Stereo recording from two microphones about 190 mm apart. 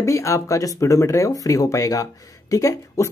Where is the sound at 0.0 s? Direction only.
15° left (ahead or behind).